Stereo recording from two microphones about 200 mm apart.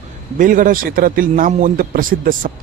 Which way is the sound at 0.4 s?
40° right (ahead or behind).